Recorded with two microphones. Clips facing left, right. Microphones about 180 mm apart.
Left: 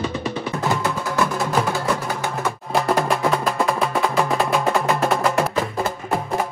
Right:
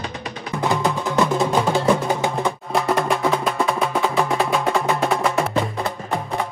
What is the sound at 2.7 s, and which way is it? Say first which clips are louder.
Music: left 1 dB; centre (ahead or behind).